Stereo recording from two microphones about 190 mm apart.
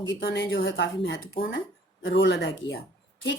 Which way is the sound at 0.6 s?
65° left (ahead or behind).